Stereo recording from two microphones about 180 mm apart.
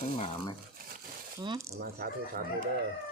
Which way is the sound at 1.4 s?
20° right (ahead or behind).